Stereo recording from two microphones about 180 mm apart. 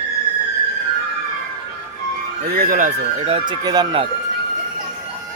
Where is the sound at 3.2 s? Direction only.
30° right (ahead or behind).